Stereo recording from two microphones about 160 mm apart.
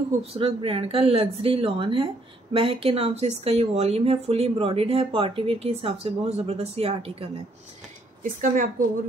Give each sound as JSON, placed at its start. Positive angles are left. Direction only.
{"t": 0.3, "sound": "speech", "side_deg": -40}
{"t": 8.2, "sound": "a woman's voice", "side_deg": -55}